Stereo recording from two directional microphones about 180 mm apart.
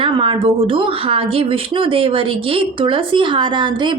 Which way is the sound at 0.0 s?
30° right (ahead or behind).